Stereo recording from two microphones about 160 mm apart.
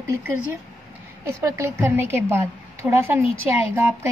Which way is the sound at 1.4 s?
15° right (ahead or behind).